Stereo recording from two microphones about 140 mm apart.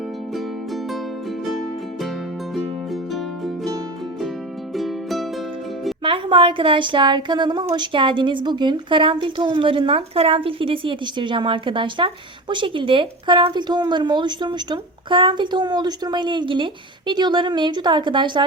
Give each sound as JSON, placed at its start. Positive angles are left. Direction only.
{"t": 0.3, "sound": "music", "side_deg": 0}
{"t": 2.6, "sound": "music", "side_deg": 0}
{"t": 4.7, "sound": "music", "side_deg": 0}
{"t": 6.0, "sound": "a woman's voice", "side_deg": -40}